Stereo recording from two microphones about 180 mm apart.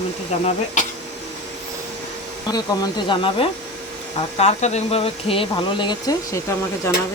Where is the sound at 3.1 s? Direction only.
30° left (ahead or behind).